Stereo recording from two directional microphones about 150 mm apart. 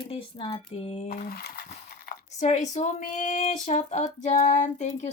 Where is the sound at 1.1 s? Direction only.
90° left.